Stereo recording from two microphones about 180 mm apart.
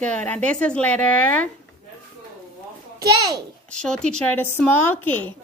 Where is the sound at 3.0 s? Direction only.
20° right (ahead or behind).